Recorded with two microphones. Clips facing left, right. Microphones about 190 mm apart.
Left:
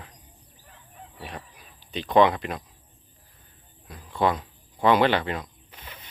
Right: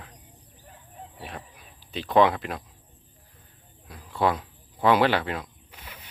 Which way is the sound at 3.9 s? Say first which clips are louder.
Left 1 dB; 5° right (ahead or behind).